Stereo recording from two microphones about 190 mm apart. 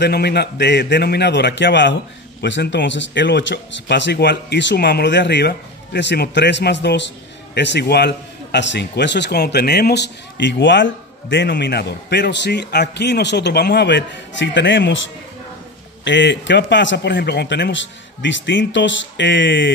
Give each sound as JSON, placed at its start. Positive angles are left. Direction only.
{"t": 0.0, "sound": "a man's voice", "side_deg": 60}
{"t": 16.0, "sound": "a man's voice", "side_deg": 70}